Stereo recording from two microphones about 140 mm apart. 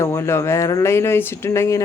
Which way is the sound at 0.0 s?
20° left (ahead or behind).